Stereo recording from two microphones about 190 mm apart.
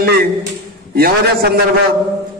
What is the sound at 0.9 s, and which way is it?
Speech, 55° right (ahead or behind).